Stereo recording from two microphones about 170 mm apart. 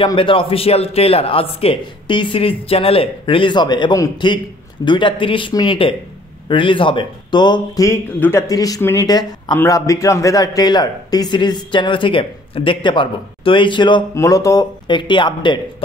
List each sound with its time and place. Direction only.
0.0 s a man's voice: 30° left (ahead or behind)